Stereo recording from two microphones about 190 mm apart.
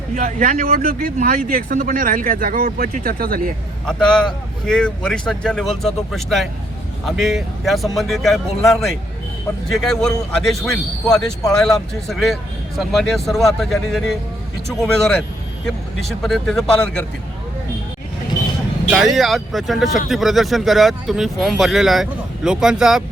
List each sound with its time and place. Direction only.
0.1 s speech: 40° right (ahead or behind)
3.8 s speech: 5° left (ahead or behind)
19.1 s speech: centre (ahead or behind)